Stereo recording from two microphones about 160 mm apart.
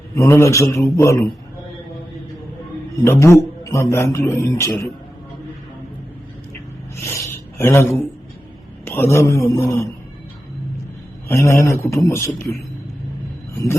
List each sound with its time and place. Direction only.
0.2 s a man's voice: 20° left (ahead or behind)
3.0 s a man's voice: 15° left (ahead or behind)
7.0 s a man's voice: 15° left (ahead or behind)
11.3 s a man's voice: 15° left (ahead or behind)